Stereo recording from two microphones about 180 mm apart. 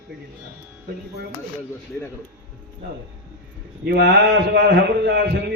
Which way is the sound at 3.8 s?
60° right (ahead or behind).